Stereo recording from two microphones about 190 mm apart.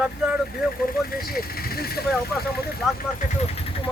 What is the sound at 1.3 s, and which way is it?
Speech, 55° left (ahead or behind).